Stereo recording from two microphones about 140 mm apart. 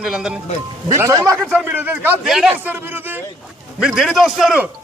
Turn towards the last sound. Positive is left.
turn(degrees=0)  # may be behind; listen again after turning